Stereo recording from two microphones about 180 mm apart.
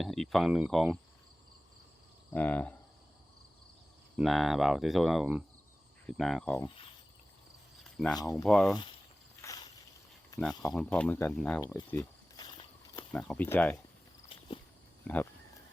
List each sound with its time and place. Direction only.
0.0 s speech: centre (ahead or behind)
2.3 s speech: 10° left (ahead or behind)
4.2 s speech: centre (ahead or behind)
7.9 s speech: centre (ahead or behind)
8.2 s speech: 20° left (ahead or behind)
8.4 s speech: 5° left (ahead or behind)
9.4 s a sound: 20° left (ahead or behind)
10.6 s speech: 5° left (ahead or behind)
11.6 s a sound: 15° left (ahead or behind)
13.1 s speech: 5° left (ahead or behind)
14.3 s walk: 30° left (ahead or behind)
15.0 s speech: 10° left (ahead or behind)